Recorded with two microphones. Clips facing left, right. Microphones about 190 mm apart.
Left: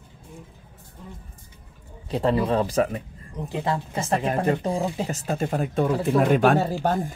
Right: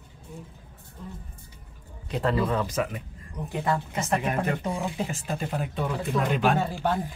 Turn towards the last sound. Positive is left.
turn(degrees=45)  # may be behind; listen again after turning